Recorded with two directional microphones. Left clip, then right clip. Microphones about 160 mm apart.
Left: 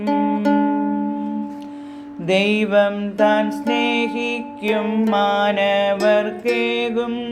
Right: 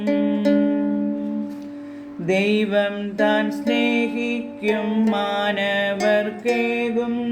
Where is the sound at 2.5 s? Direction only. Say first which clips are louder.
Left 4 dB; 25° left (ahead or behind).